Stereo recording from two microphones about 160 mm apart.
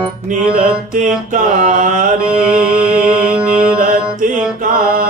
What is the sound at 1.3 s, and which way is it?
Mantra, 55° right (ahead or behind).